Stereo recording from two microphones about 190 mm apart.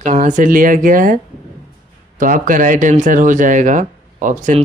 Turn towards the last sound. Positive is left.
turn(degrees=-40)  # may be behind; listen again after turning